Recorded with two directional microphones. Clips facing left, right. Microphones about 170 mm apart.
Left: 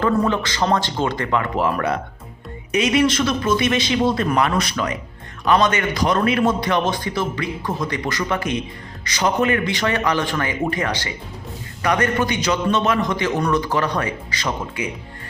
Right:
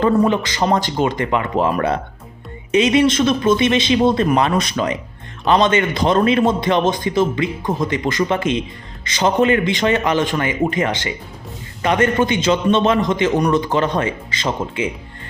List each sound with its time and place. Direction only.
0.0 s a man's voice: 15° right (ahead or behind)